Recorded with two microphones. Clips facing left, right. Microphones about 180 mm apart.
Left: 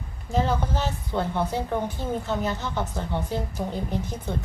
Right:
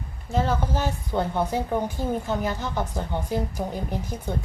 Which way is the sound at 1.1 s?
15° right (ahead or behind).